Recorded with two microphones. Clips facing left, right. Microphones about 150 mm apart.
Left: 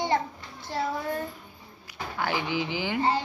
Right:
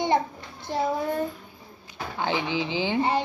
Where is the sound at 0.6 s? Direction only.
20° right (ahead or behind).